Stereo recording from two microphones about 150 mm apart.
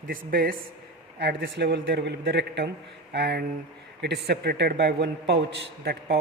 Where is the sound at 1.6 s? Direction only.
90° right.